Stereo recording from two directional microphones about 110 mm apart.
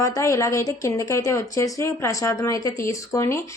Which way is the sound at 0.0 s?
25° left (ahead or behind).